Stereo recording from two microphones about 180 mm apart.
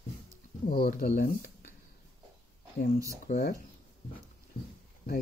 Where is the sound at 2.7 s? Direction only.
55° left (ahead or behind).